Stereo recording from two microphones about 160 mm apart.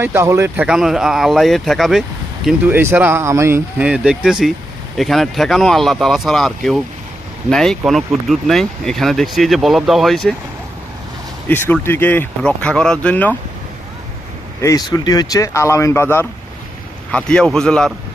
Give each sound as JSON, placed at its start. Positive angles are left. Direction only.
{"t": 0.0, "sound": "speech", "side_deg": -15}
{"t": 11.4, "sound": "speech", "side_deg": 15}
{"t": 14.6, "sound": "speech", "side_deg": 20}